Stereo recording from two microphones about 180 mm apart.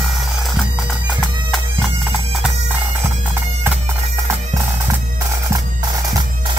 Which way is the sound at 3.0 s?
10° right (ahead or behind).